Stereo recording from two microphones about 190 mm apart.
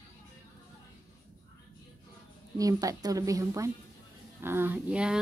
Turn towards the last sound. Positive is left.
turn(degrees=-5)  # may be behind; listen again after turning